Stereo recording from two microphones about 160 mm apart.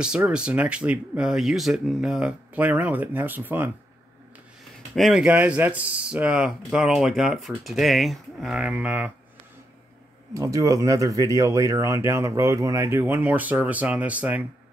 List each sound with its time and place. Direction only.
0.0 s speech: 5° right (ahead or behind)
4.9 s speech: centre (ahead or behind)
10.3 s speech: 20° right (ahead or behind)